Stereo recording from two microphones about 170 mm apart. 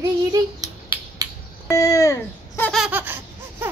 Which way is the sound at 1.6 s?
20° left (ahead or behind).